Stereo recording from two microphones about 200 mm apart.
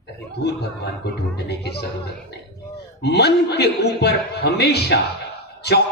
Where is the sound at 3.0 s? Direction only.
55° left (ahead or behind).